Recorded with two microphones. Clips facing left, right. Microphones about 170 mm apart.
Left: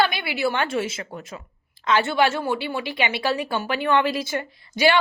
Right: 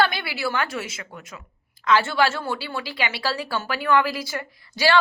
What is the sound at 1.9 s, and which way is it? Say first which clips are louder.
A woman's voice: even; 20° left (ahead or behind).